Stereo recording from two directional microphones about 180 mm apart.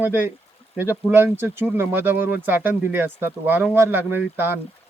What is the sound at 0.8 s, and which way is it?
Speech, 10° right (ahead or behind).